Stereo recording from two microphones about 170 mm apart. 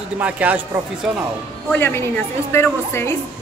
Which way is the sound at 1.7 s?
10° left (ahead or behind).